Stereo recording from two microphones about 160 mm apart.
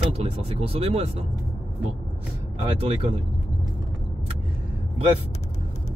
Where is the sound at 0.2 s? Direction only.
40° right (ahead or behind).